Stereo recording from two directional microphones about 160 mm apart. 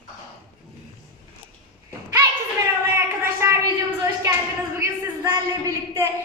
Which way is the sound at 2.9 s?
15° right (ahead or behind).